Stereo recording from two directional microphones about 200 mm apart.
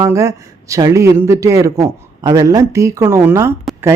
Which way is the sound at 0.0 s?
15° right (ahead or behind).